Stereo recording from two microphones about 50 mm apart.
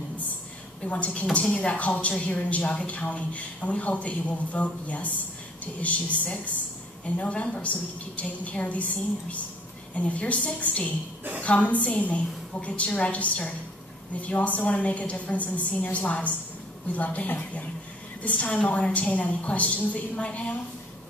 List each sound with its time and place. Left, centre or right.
0.8 s a woman's voice: left